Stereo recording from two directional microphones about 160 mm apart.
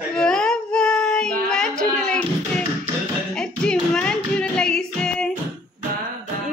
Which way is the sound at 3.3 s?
5° left (ahead or behind).